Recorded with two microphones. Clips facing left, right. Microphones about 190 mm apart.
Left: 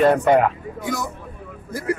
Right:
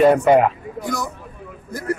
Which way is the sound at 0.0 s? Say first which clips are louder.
Right 2 dB; 5° right (ahead or behind).